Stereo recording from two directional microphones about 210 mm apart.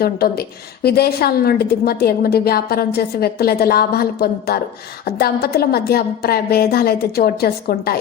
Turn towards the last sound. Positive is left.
turn(degrees=45)  # may be behind; listen again after turning